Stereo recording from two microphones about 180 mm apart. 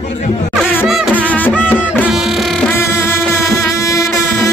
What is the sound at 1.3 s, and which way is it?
Music, 10° left (ahead or behind).